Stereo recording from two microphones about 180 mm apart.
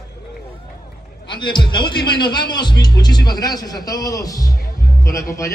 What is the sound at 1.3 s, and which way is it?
A man's voice, 25° left (ahead or behind).